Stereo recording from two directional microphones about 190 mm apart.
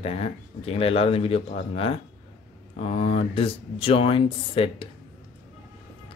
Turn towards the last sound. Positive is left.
turn(degrees=30)  # may be behind; listen again after turning